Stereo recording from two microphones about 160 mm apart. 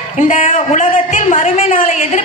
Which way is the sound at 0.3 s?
55° left (ahead or behind).